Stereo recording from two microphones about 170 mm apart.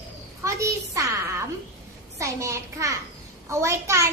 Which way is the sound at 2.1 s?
20° right (ahead or behind).